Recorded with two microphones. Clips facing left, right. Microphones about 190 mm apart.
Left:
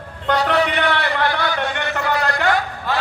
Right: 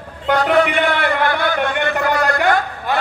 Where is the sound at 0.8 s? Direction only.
50° right (ahead or behind).